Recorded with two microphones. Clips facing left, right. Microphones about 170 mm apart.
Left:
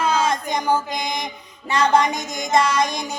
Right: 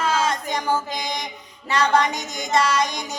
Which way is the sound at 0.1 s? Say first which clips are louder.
Left 2 dB; 15° left (ahead or behind).